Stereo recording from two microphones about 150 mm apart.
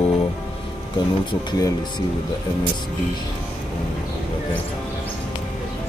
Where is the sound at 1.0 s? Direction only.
30° left (ahead or behind).